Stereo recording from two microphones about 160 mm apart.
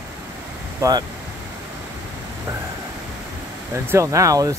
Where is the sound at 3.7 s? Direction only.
15° right (ahead or behind).